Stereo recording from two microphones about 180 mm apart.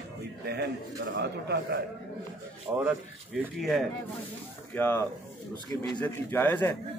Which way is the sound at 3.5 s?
Centre (ahead or behind).